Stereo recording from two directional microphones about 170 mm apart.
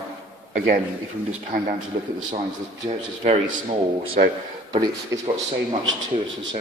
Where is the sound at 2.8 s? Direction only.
40° right (ahead or behind).